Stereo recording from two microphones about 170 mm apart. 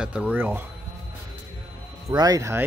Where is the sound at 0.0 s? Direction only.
5° right (ahead or behind).